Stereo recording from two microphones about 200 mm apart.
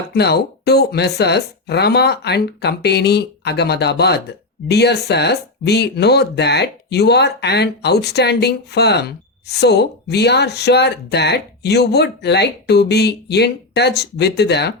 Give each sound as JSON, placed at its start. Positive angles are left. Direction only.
{"t": 0.1, "sound": "speech", "side_deg": 55}